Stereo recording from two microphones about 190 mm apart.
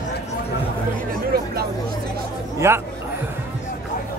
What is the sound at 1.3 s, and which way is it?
Chatter, 55° right (ahead or behind).